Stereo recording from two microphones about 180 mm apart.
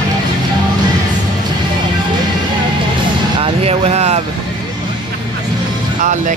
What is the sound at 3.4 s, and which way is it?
Vehicle, 35° right (ahead or behind).